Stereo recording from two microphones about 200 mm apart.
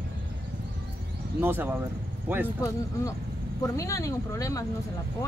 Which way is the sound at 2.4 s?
15° left (ahead or behind).